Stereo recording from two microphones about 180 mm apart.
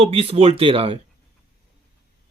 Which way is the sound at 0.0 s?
35° right (ahead or behind).